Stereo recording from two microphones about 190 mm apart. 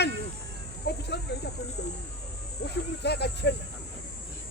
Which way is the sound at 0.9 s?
60° left (ahead or behind).